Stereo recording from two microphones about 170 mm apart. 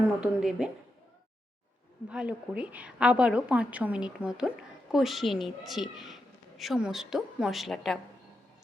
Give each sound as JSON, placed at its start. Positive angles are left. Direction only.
{"t": 0.2, "sound": "a woman's voice", "side_deg": -5}
{"t": 2.0, "sound": "a woman's voice", "side_deg": -5}